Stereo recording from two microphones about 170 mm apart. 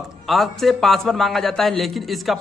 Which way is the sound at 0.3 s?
Centre (ahead or behind).